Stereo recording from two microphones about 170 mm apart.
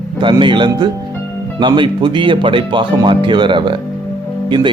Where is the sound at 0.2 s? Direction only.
30° right (ahead or behind).